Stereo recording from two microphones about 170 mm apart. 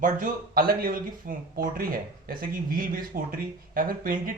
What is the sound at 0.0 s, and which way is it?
Speech, 55° right (ahead or behind).